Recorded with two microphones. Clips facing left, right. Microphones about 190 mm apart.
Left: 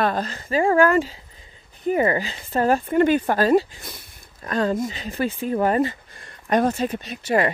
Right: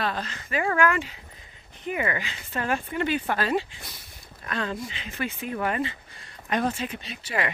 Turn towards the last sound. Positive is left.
turn(degrees=45)  # may be behind; listen again after turning